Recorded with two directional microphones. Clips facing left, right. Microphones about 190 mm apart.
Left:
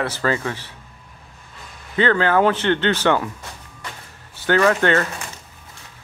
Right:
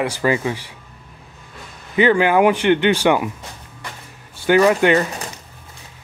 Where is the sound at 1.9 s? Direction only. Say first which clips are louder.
Right 3 dB; 15° right (ahead or behind).